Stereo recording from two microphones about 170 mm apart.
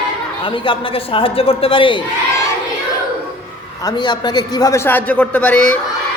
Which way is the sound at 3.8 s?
25° left (ahead or behind).